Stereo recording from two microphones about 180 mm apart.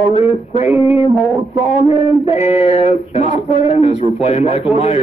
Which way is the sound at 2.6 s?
30° left (ahead or behind).